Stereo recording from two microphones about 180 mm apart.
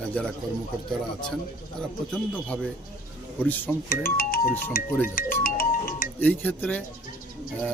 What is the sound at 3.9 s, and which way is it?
Speech, 55° left (ahead or behind).